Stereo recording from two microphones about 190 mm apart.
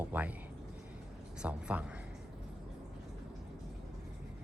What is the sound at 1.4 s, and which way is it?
Speech, 5° right (ahead or behind).